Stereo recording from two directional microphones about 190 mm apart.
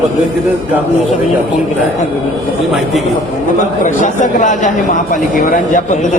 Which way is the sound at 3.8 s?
40° left (ahead or behind).